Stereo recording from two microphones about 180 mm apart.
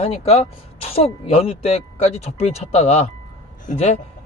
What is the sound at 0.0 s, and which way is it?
Speech, 35° left (ahead or behind).